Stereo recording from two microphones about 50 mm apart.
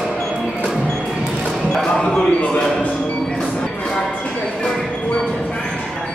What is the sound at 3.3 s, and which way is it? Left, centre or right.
Music, centre.